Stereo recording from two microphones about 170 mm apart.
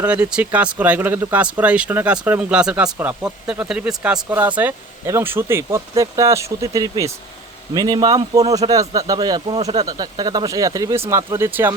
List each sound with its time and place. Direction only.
0.0 s speech: 5° right (ahead or behind)